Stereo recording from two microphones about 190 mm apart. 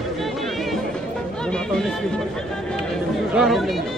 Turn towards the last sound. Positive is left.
turn(degrees=0)  # may be behind; listen again after turning